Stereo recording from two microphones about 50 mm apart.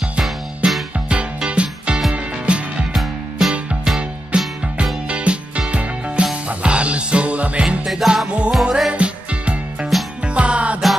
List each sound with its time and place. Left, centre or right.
0.6 s music: right
2.9 s music: centre
4.3 s music: right
7.8 s music: centre
8.9 s music: right